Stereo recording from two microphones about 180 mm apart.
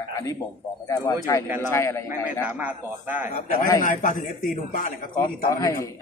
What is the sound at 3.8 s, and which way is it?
A man's voice, 45° left (ahead or behind).